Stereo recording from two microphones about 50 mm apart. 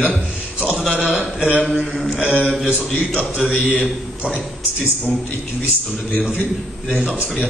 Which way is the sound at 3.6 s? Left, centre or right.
Left.